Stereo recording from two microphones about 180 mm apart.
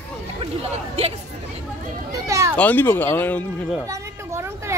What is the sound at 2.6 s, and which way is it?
Speech, 10° left (ahead or behind).